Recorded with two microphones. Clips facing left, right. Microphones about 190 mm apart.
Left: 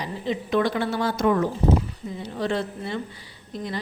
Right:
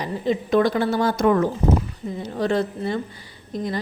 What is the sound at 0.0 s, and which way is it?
A woman's voice, 45° right (ahead or behind).